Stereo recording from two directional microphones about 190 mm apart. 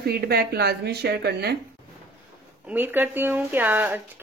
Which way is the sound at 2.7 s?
10° right (ahead or behind).